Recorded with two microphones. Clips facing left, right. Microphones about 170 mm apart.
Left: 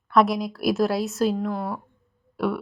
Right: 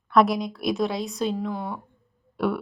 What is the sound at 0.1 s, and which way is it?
Speech, centre (ahead or behind).